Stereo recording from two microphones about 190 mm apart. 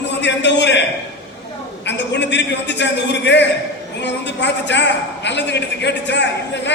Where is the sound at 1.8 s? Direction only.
65° left (ahead or behind).